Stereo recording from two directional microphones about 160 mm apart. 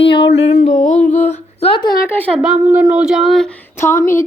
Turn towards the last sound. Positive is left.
turn(degrees=15)  # may be behind; listen again after turning